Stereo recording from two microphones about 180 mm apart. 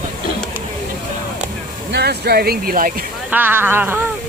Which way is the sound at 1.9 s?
65° right (ahead or behind).